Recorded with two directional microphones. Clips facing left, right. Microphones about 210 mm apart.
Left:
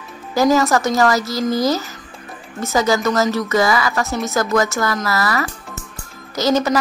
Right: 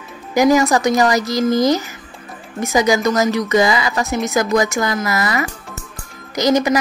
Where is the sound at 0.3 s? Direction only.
15° right (ahead or behind).